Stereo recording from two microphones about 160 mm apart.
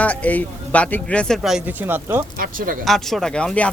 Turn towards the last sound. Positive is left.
turn(degrees=5)  # may be behind; listen again after turning